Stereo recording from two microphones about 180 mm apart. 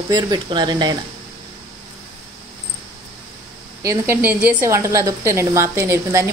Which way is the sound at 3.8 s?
15° right (ahead or behind).